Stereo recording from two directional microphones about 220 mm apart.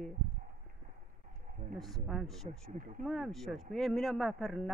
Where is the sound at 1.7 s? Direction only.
Centre (ahead or behind).